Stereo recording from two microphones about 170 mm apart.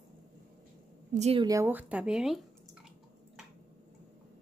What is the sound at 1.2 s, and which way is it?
Speech, 35° right (ahead or behind).